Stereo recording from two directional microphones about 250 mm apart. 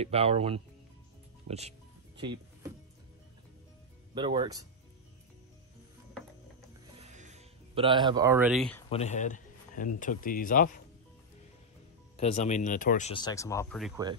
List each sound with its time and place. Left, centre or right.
0.0 s speech: right
1.5 s music: right
4.1 s speech: centre
7.0 s music: right; by 8.8 s centre
8.9 s a man's voice: left
12.2 s speech: left
13.1 s speech: centre